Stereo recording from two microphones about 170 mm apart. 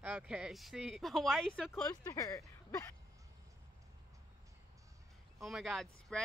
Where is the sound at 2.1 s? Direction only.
20° left (ahead or behind).